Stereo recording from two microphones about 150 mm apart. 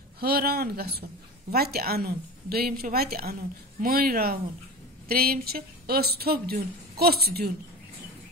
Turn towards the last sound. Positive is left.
turn(degrees=-90)